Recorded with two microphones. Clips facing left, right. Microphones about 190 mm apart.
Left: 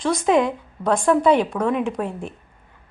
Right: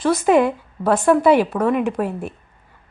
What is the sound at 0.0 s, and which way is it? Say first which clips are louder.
A woman's voice: right 3 dB; 5° right (ahead or behind).